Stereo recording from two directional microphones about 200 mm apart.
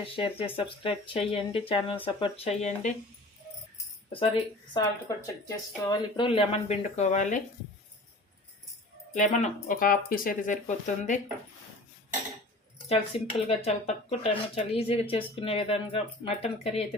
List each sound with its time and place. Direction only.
0.0 s speech: 25° left (ahead or behind)
4.7 s speech: 15° left (ahead or behind); by 7.4 s 40° left (ahead or behind)
9.1 s speech: 35° left (ahead or behind)
12.9 s speech: 30° left (ahead or behind)